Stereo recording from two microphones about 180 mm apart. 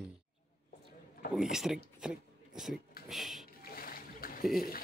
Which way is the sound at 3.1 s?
Centre (ahead or behind).